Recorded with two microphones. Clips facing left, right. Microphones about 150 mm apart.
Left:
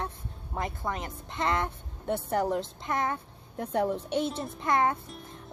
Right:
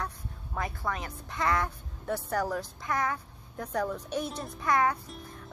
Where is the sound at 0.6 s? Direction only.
20° left (ahead or behind).